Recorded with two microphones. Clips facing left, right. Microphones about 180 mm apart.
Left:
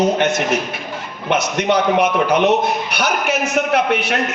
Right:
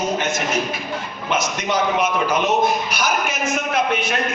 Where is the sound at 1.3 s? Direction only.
60° left (ahead or behind).